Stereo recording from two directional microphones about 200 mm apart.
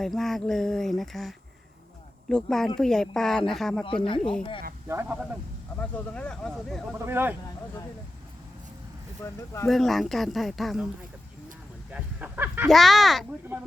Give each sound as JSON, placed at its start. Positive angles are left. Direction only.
{"t": 0.0, "sound": "speech", "side_deg": 0}
{"t": 4.0, "sound": "speech", "side_deg": 25}
{"t": 4.9, "sound": "speech", "side_deg": -10}
{"t": 5.8, "sound": "speech", "side_deg": 5}
{"t": 7.0, "sound": "speech", "side_deg": -10}
{"t": 9.2, "sound": "speech", "side_deg": 15}
{"t": 9.6, "sound": "speech", "side_deg": 0}
{"t": 11.9, "sound": "a sound", "side_deg": -5}
{"t": 12.6, "sound": "speech", "side_deg": 0}